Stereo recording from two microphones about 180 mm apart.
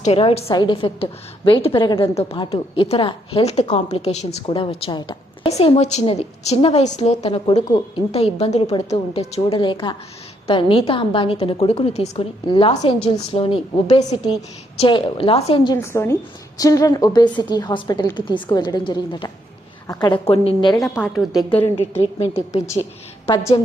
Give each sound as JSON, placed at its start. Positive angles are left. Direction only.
{"t": 0.0, "sound": "a woman's voice", "side_deg": 35}
{"t": 15.8, "sound": "a woman's voice", "side_deg": 15}
{"t": 20.8, "sound": "a woman's voice", "side_deg": 0}
{"t": 21.6, "sound": "a woman's voice", "side_deg": 35}